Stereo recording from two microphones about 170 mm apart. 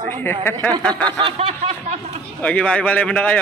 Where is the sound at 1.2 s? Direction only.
35° right (ahead or behind).